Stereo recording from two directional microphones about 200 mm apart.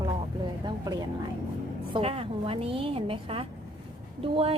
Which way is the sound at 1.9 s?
30° right (ahead or behind).